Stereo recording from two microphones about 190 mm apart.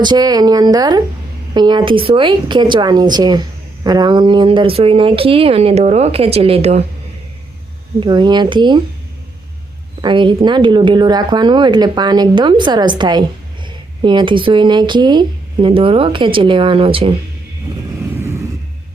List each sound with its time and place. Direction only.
0.0 s speech: 20° right (ahead or behind)
8.0 s speech: 25° right (ahead or behind)
10.0 s speech: 25° right (ahead or behind)